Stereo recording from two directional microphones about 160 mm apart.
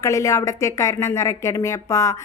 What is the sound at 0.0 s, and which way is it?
Speech, 20° left (ahead or behind).